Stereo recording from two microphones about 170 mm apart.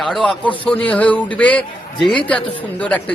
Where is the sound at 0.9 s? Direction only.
10° left (ahead or behind).